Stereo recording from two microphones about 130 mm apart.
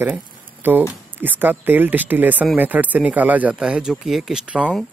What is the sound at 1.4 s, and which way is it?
Speech, 15° right (ahead or behind).